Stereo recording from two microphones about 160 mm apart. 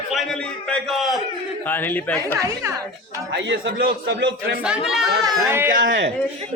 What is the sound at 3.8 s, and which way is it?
Speech, 90° right.